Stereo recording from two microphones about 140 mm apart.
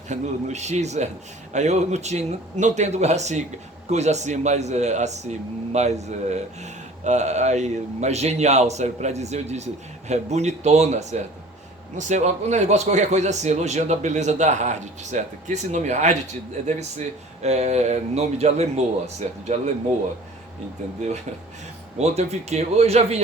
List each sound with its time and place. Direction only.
0.1 s a man's voice: 55° right (ahead or behind)
17.4 s speech: 50° right (ahead or behind)
21.9 s speech: 50° right (ahead or behind)